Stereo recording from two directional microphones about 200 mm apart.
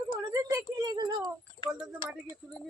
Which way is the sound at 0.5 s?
20° right (ahead or behind).